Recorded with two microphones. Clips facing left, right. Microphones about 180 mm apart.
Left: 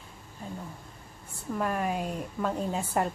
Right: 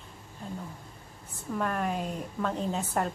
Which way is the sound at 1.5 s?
5° left (ahead or behind).